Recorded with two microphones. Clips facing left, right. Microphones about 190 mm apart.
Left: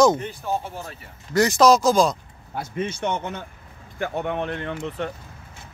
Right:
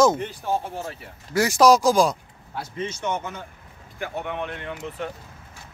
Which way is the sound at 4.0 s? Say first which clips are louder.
Left 4 dB; 45° left (ahead or behind).